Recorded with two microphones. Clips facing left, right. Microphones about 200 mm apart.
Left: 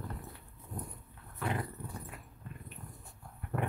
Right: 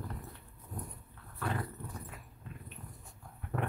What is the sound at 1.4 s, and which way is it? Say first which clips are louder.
Dog: left 1 dB; 15° left (ahead or behind).